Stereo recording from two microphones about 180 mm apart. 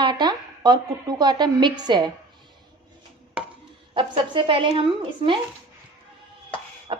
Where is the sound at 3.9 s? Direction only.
30° right (ahead or behind).